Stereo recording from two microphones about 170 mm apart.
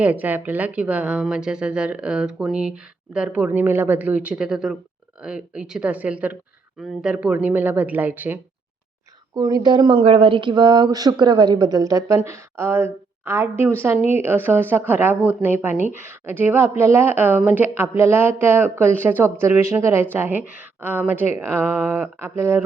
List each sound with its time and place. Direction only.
0.0 s a woman's voice: 10° right (ahead or behind)
9.3 s a woman's voice: 25° right (ahead or behind)